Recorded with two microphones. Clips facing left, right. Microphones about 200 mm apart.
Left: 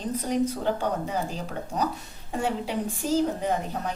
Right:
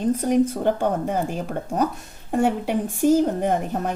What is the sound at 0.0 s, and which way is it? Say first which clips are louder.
A woman's voice: right 7 dB; 50° right (ahead or behind).